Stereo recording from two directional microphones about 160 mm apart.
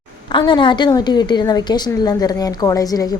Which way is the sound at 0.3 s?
30° left (ahead or behind).